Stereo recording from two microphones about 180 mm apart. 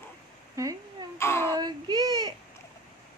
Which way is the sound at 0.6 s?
15° right (ahead or behind).